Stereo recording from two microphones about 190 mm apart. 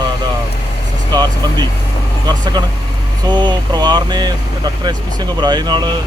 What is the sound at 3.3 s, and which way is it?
Speech, 25° right (ahead or behind).